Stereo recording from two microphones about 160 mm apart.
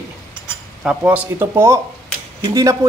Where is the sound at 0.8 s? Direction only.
10° right (ahead or behind).